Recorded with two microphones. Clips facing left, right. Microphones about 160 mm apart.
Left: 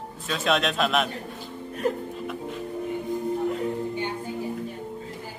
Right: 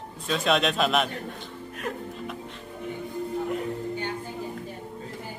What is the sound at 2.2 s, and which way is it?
Music, 5° left (ahead or behind).